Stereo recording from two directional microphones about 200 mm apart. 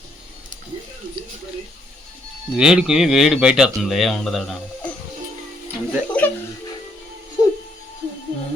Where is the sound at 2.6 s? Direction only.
5° right (ahead or behind).